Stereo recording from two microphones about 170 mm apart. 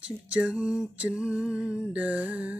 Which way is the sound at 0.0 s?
5° right (ahead or behind).